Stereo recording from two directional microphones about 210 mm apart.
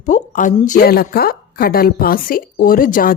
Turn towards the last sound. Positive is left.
turn(degrees=40)  # may be behind; listen again after turning